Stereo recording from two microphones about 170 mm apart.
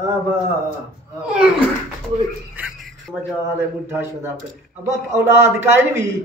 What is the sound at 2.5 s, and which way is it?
A man's voice, 10° right (ahead or behind).